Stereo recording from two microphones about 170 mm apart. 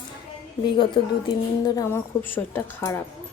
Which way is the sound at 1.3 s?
20° left (ahead or behind).